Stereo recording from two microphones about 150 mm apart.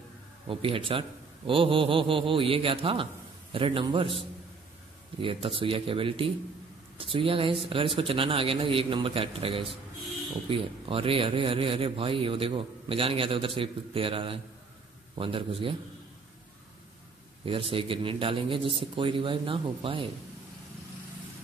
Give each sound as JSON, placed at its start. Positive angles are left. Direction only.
{"t": 0.5, "sound": "a man's voice", "side_deg": -35}
{"t": 17.5, "sound": "a man's voice", "side_deg": -35}